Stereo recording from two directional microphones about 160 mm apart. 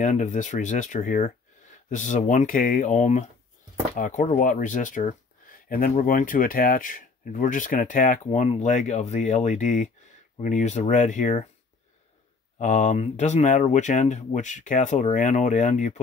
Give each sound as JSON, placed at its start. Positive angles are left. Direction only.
{"t": 0.0, "sound": "speech", "side_deg": 50}
{"t": 12.5, "sound": "speech", "side_deg": 50}